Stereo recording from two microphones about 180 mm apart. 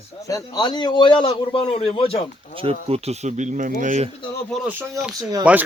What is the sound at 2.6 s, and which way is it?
Speech, 35° right (ahead or behind).